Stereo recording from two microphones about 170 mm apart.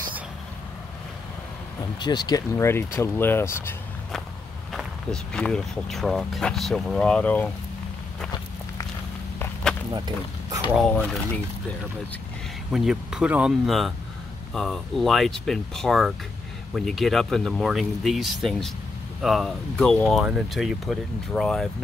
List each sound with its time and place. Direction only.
2.0 s speech: 25° left (ahead or behind)
4.7 s speech: 5° left (ahead or behind)
9.9 s speech: 20° right (ahead or behind)
12.7 s speech: 5° right (ahead or behind)